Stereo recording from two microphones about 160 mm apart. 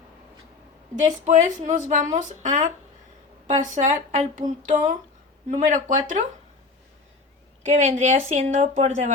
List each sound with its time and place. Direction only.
1.2 s speech: 45° right (ahead or behind)
7.8 s speech: 45° right (ahead or behind)